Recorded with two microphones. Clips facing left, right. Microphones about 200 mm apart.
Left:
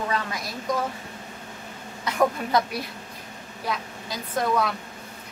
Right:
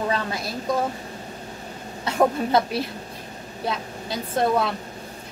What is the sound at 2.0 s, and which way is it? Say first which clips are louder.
A woman's voice: right 3 dB; 25° right (ahead or behind).